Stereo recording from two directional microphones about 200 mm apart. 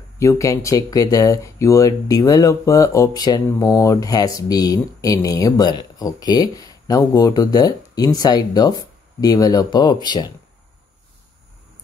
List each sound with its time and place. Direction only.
0.2 s speech: 15° left (ahead or behind)